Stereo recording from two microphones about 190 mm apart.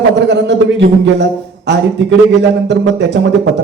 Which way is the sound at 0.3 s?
65° right (ahead or behind).